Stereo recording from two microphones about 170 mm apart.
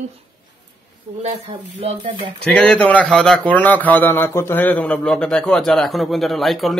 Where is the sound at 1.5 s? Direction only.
35° right (ahead or behind).